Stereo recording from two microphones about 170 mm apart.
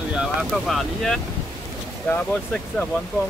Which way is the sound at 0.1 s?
5° right (ahead or behind).